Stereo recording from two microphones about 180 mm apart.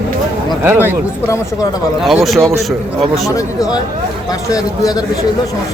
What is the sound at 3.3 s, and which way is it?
Speech, 20° left (ahead or behind).